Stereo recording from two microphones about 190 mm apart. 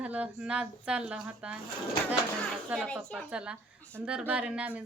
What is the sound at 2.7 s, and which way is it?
A child's voice, 5° right (ahead or behind).